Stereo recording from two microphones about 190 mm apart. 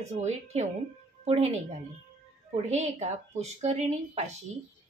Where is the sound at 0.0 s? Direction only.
35° right (ahead or behind).